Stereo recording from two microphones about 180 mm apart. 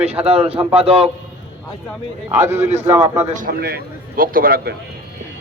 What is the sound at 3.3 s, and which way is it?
A man's voice, 55° right (ahead or behind).